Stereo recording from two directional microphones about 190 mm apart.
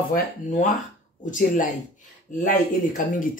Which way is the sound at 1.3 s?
40° left (ahead or behind).